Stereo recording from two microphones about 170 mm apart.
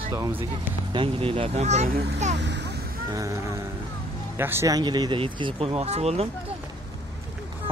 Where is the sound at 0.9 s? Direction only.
30° right (ahead or behind).